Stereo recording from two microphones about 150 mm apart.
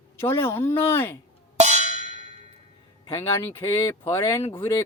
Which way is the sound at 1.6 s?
50° right (ahead or behind).